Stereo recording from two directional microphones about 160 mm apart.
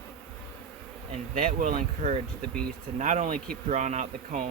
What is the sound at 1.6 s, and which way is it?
Speech, 50° right (ahead or behind).